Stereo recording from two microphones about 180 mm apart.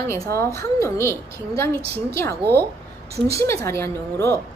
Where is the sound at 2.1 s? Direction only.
15° left (ahead or behind).